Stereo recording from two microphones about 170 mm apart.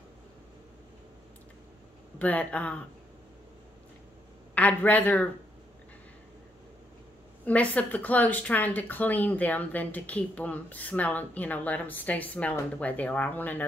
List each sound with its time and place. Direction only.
2.1 s speech: 10° left (ahead or behind)
4.6 s speech: 10° left (ahead or behind)
7.4 s speech: 10° left (ahead or behind)